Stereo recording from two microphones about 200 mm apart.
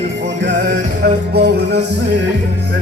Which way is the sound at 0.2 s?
60° right (ahead or behind).